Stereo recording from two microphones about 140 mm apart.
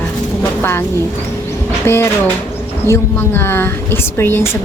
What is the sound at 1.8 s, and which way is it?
A woman's voice, 20° left (ahead or behind).